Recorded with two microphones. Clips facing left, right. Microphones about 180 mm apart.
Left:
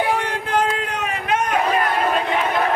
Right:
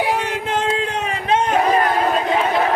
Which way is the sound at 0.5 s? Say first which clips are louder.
Even; 25° right (ahead or behind).